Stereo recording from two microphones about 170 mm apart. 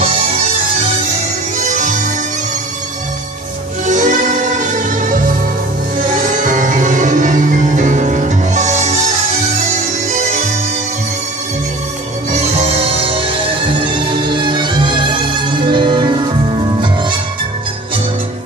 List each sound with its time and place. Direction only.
1.6 s music: 45° right (ahead or behind)
3.8 s music: 45° right (ahead or behind)
12.3 s music: 40° right (ahead or behind)